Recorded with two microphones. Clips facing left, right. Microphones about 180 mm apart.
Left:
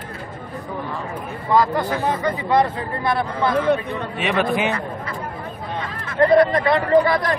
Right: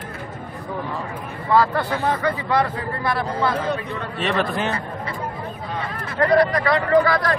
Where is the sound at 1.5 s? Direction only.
15° left (ahead or behind).